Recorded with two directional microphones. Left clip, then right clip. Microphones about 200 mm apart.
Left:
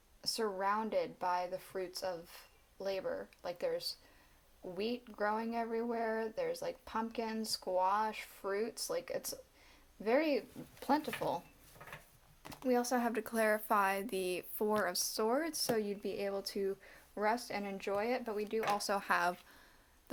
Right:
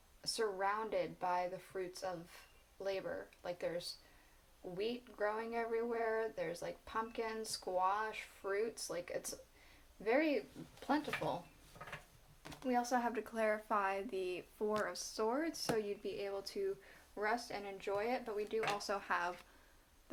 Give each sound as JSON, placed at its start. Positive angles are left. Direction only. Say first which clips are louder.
{"t": 0.2, "sound": "speech", "louder": "left 2 dB", "side_deg": 40}
{"t": 12.6, "sound": "speech", "louder": "left 3 dB", "side_deg": 45}